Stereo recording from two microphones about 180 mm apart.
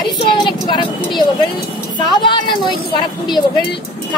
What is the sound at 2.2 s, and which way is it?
Speech, 25° left (ahead or behind).